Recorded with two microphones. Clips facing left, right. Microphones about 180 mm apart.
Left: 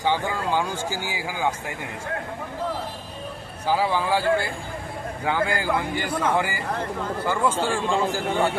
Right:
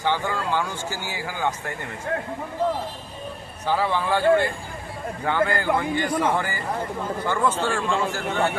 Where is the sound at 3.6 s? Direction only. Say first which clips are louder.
Left 1 dB; 10° left (ahead or behind).